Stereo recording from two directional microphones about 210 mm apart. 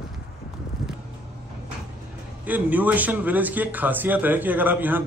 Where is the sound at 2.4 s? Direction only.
10° right (ahead or behind).